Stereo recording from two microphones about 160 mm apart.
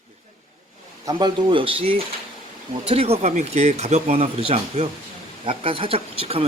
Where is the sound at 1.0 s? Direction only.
30° right (ahead or behind).